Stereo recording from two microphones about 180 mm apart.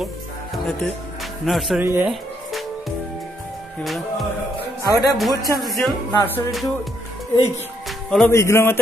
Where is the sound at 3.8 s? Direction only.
Centre (ahead or behind).